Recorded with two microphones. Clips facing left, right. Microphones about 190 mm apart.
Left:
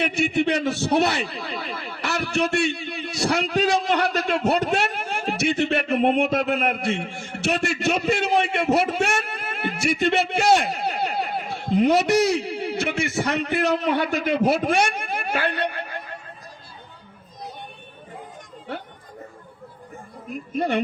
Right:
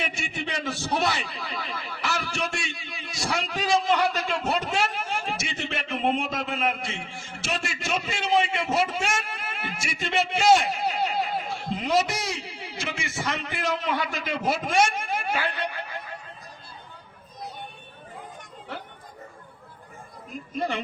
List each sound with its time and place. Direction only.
0.0 s a man's voice: 65° left (ahead or behind)
20.6 s a man's voice: 60° left (ahead or behind)